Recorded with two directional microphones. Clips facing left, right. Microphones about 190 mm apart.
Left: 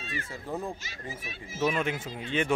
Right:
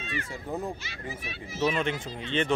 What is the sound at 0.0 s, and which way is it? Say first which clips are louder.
Children playing: right 3 dB; 40° left (ahead or behind).